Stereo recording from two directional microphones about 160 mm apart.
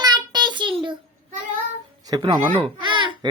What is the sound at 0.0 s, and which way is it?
Child singing, 25° right (ahead or behind).